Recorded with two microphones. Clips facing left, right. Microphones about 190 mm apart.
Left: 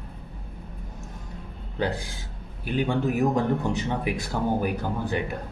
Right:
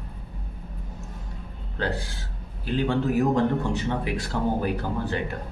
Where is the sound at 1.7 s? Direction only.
15° left (ahead or behind).